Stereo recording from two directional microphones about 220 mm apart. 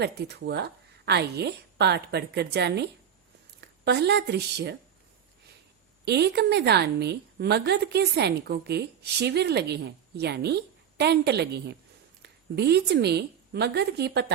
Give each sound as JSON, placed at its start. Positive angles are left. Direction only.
{"t": 0.0, "sound": "a woman's voice", "side_deg": -50}
{"t": 6.1, "sound": "a woman's voice", "side_deg": -50}